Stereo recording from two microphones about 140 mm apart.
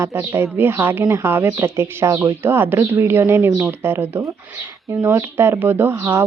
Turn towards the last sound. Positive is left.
turn(degrees=-20)  # may be behind; listen again after turning